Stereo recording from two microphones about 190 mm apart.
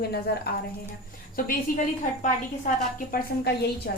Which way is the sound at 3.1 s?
60° left (ahead or behind).